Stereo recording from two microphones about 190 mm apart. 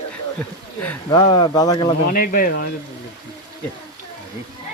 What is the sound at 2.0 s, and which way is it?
Speech, 50° left (ahead or behind).